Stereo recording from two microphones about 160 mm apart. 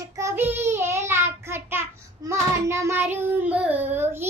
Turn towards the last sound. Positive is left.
turn(degrees=-15)  # may be behind; listen again after turning